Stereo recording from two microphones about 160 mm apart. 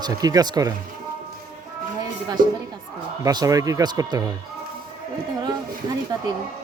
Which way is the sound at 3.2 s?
20° right (ahead or behind).